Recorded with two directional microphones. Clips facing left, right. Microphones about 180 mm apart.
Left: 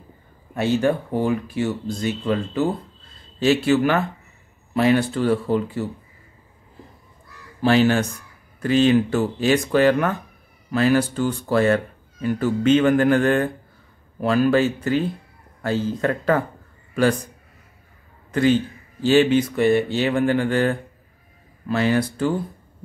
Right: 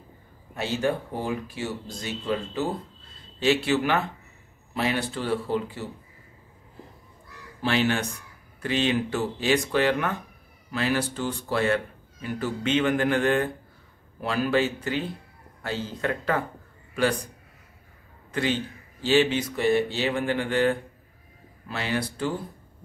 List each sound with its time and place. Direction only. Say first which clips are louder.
0.6 s speech: left 6 dB; 55° left (ahead or behind)
3.3 s speech: left 5 dB; 45° left (ahead or behind)
7.6 s speech: left 7 dB; 40° left (ahead or behind)
18.3 s a man's voice: left 9 dB; 45° left (ahead or behind)